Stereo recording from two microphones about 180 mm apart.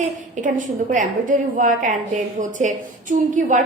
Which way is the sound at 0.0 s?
45° right (ahead or behind).